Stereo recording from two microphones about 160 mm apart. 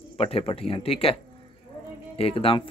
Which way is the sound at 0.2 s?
40° left (ahead or behind).